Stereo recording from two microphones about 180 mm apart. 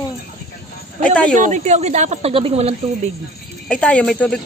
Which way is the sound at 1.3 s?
45° right (ahead or behind).